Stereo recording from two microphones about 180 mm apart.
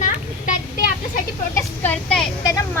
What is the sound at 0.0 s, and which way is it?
Children playing, 50° left (ahead or behind).